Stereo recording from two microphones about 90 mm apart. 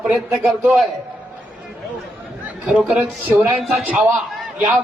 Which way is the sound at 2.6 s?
15° right (ahead or behind).